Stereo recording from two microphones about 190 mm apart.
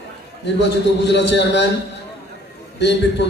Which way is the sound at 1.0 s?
65° left (ahead or behind).